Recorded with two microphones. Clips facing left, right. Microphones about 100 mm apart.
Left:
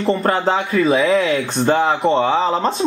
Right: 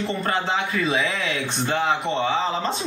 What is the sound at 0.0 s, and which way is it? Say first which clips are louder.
Speech: left 8 dB; 40° left (ahead or behind).